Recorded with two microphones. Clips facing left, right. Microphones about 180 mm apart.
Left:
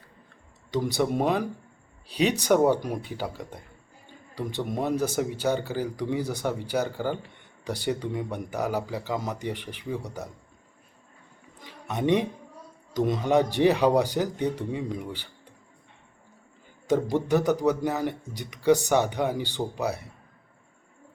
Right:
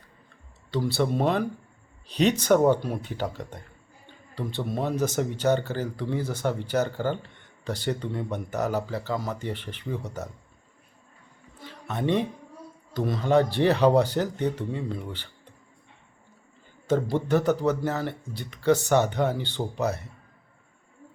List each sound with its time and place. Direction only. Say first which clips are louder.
0.7 s speech: even; 15° left (ahead or behind)
11.6 s a sound: left 1 dB; 15° left (ahead or behind)
12.9 s speech: even; 15° left (ahead or behind)
16.9 s speech: even; 15° left (ahead or behind)